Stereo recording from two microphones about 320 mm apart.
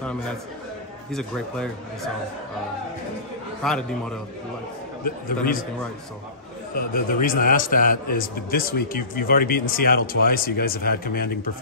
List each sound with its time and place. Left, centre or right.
1.1 s speech: centre
3.6 s speech: centre
6.7 s a man's voice: left